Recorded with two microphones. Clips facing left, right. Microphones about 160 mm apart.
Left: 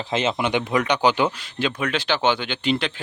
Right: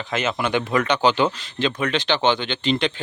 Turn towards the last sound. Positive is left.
turn(degrees=5)  # may be behind; listen again after turning